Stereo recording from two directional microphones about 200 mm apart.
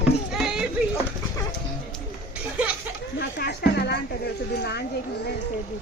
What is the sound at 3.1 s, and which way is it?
Speech, 55° left (ahead or behind).